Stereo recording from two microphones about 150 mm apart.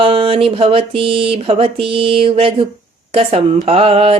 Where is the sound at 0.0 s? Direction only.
35° right (ahead or behind).